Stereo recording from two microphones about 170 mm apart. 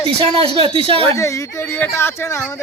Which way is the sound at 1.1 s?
20° left (ahead or behind).